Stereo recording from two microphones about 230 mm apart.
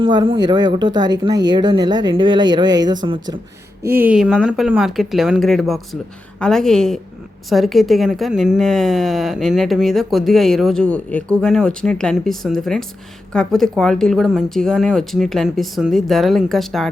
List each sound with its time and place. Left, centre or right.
0.0 s speech: centre